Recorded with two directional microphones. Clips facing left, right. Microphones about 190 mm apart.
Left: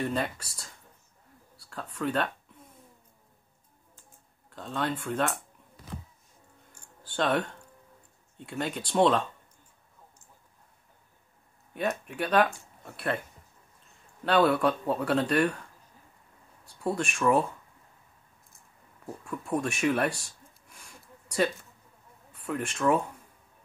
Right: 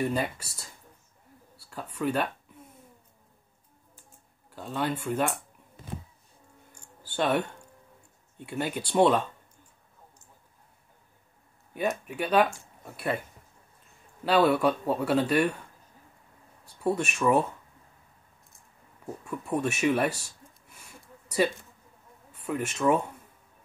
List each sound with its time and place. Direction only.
0.0 s speech: 5° right (ahead or behind)
2.0 s speech: 5° right (ahead or behind)
4.5 s speech: 5° right (ahead or behind)
5.8 s a sound: 25° right (ahead or behind)
7.0 s a sound: 5° right (ahead or behind)
8.4 s speech: 5° right (ahead or behind)
11.7 s speech: 5° right (ahead or behind)
14.2 s speech: 5° right (ahead or behind)
16.8 s speech: 5° right (ahead or behind)
19.2 s speech: 5° right (ahead or behind)